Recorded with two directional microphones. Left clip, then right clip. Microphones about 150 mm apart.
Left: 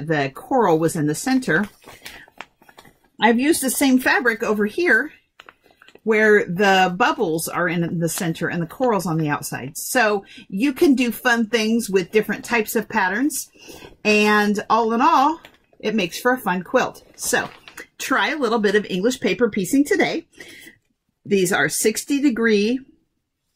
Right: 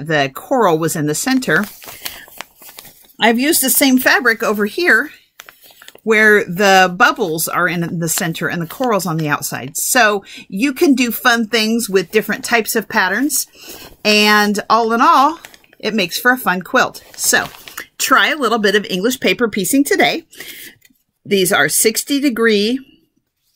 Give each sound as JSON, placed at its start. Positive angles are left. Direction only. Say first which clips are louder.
{"t": 0.0, "sound": "speech", "louder": "right 6 dB", "side_deg": -20}
{"t": 2.3, "sound": "a sound", "louder": "right 6 dB", "side_deg": -5}
{"t": 3.2, "sound": "speech", "louder": "right 4 dB", "side_deg": -20}
{"t": 6.0, "sound": "speech", "louder": "right 5 dB", "side_deg": -25}
{"t": 21.3, "sound": "speech", "louder": "right 5 dB", "side_deg": -15}